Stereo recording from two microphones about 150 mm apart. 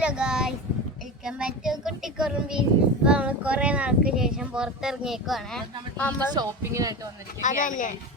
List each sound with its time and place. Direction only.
0.0 s speech: 5° right (ahead or behind)
6.3 s speech: 20° right (ahead or behind)
7.4 s speech: 60° left (ahead or behind)